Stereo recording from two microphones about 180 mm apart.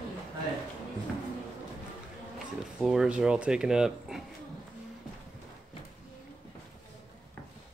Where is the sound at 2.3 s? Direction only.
Centre (ahead or behind).